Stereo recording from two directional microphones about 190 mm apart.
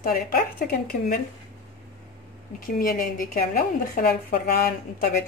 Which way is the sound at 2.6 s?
45° left (ahead or behind).